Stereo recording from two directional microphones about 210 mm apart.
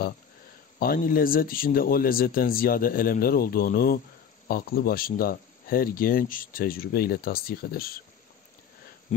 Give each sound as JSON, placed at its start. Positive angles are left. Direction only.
{"t": 0.7, "sound": "speech", "side_deg": 45}